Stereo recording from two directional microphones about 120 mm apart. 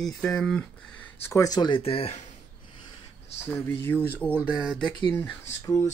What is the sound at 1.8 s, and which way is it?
Speech, 55° left (ahead or behind).